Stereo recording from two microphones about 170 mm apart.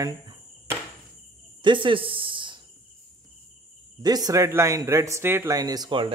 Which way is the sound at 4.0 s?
20° right (ahead or behind).